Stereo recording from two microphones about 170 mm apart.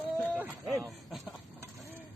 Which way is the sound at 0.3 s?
10° right (ahead or behind).